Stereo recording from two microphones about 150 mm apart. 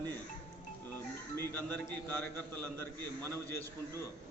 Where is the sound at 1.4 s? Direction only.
10° left (ahead or behind).